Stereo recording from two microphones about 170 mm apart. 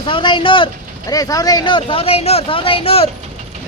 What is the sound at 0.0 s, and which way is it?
Speech, 30° left (ahead or behind).